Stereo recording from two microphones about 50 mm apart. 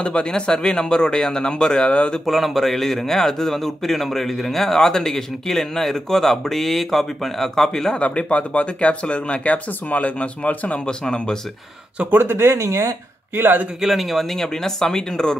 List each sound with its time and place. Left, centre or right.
0.0 s speech: centre
2.2 s a man's voice: centre
8.0 s speech: left
12.1 s speech: right
12.6 s speech: right
13.7 s speech: centre